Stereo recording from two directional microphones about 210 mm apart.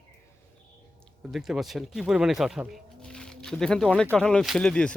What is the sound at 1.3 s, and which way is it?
A man's voice, centre (ahead or behind).